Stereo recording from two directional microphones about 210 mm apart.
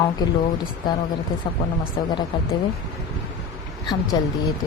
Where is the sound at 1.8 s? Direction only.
25° left (ahead or behind).